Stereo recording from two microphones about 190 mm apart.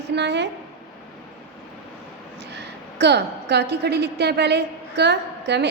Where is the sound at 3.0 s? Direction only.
60° right (ahead or behind).